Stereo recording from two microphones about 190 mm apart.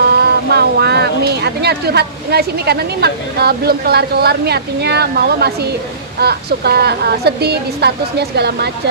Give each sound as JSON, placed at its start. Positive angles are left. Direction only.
{"t": 0.1, "sound": "speech", "side_deg": -60}